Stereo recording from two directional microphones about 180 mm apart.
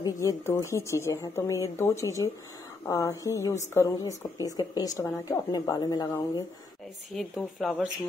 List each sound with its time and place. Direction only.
0.0 s a woman's voice: 15° left (ahead or behind)
7.2 s speech: centre (ahead or behind)